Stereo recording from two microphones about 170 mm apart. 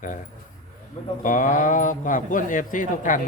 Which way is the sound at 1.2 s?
50° left (ahead or behind).